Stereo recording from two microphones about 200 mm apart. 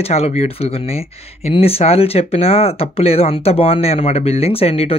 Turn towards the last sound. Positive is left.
turn(degrees=30)  # may be behind; listen again after turning